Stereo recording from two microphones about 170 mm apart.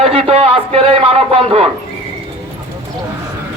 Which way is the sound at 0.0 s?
35° right (ahead or behind).